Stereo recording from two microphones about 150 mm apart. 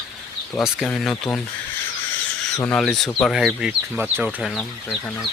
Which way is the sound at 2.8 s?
Centre (ahead or behind).